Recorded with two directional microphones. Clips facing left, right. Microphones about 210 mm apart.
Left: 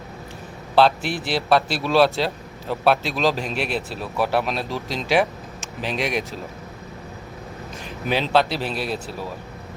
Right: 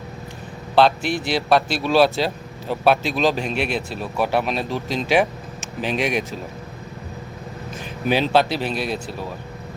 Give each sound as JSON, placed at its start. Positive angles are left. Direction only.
{"t": 0.8, "sound": "a man's voice", "side_deg": 5}
{"t": 3.5, "sound": "speech", "side_deg": 35}
{"t": 3.8, "sound": "a man's voice", "side_deg": 0}
{"t": 8.1, "sound": "a man's voice", "side_deg": -5}